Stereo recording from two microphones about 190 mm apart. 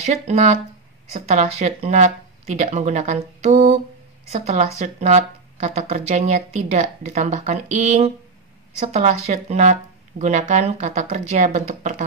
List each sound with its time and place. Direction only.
0.0 s speech: 35° right (ahead or behind)